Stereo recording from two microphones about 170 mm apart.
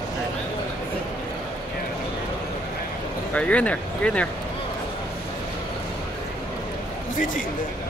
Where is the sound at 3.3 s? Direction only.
5° left (ahead or behind).